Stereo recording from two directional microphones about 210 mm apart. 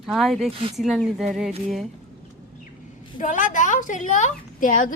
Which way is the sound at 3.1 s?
35° left (ahead or behind).